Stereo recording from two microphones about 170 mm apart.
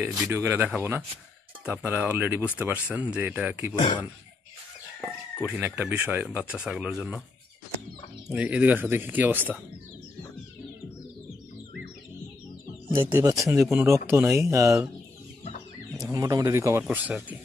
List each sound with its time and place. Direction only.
0.0 s speech: 15° right (ahead or behind)
3.7 s speech: 25° left (ahead or behind)
5.4 s speech: 10° right (ahead or behind)
8.3 s speech: 10° right (ahead or behind)
12.9 s speech: 20° right (ahead or behind)
15.9 s speech: 20° right (ahead or behind)
16.8 s speech: 5° right (ahead or behind)